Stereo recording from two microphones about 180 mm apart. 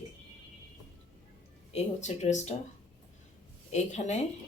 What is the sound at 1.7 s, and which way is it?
Speech, 40° left (ahead or behind).